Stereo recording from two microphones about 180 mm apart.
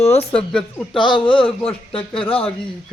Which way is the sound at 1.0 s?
25° left (ahead or behind).